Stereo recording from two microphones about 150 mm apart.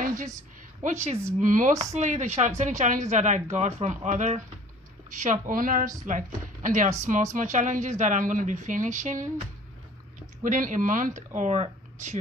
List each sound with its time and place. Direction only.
0.8 s a woman's voice: 50° right (ahead or behind)